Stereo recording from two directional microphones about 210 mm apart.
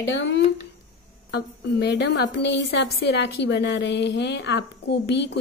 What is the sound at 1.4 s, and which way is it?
A woman's voice, 50° left (ahead or behind).